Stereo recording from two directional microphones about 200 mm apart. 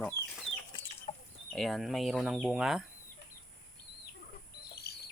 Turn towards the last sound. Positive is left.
turn(degrees=50)  # may be behind; listen again after turning